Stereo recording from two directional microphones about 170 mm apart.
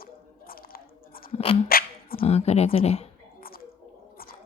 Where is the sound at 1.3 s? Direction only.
35° left (ahead or behind).